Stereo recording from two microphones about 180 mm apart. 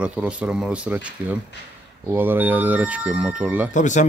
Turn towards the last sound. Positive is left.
turn(degrees=45)  # may be behind; listen again after turning